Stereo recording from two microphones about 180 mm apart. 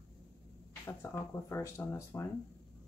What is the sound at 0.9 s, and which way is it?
Speech, 15° left (ahead or behind).